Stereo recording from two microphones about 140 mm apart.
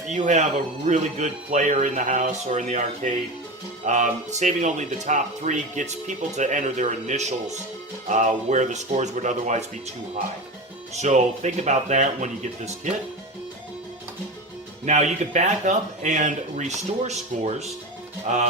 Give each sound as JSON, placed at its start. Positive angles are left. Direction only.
{"t": 0.1, "sound": "speech", "side_deg": -55}
{"t": 10.9, "sound": "speech", "side_deg": -55}
{"t": 14.8, "sound": "speech", "side_deg": -55}
{"t": 18.3, "sound": "speech", "side_deg": -60}